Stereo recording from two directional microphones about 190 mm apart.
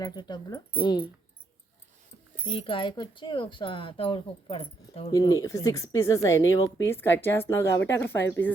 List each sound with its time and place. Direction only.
0.0 s speech: 20° left (ahead or behind)
2.5 s speech: 30° left (ahead or behind); by 8.2 s 10° left (ahead or behind)